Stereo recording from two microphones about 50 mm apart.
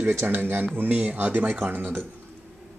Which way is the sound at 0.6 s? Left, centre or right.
Right.